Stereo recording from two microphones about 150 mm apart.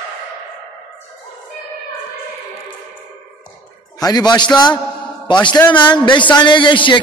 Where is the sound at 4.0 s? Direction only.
25° left (ahead or behind).